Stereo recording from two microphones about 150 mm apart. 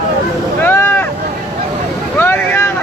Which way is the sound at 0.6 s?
15° left (ahead or behind).